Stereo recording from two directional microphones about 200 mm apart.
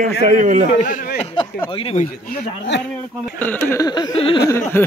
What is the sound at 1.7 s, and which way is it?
Speech, 30° left (ahead or behind).